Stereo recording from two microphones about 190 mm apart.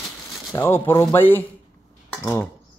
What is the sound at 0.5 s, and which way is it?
Speech, 10° left (ahead or behind).